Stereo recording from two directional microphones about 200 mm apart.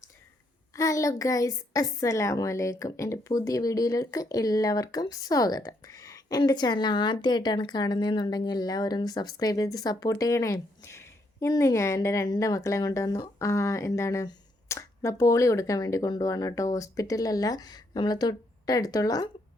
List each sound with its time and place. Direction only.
0.7 s a woman's voice: 15° left (ahead or behind)